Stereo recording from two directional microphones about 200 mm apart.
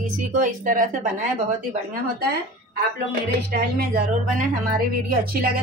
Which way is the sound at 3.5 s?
50° right (ahead or behind).